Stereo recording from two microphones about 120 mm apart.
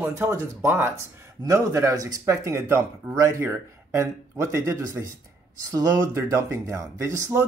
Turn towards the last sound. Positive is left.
turn(degrees=-25)  # may be behind; listen again after turning